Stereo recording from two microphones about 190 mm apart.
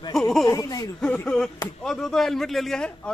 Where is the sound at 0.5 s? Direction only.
20° left (ahead or behind).